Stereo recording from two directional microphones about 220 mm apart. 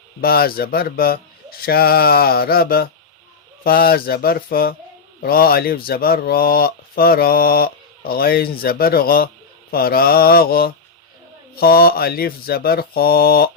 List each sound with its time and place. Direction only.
0.2 s speech: 40° left (ahead or behind)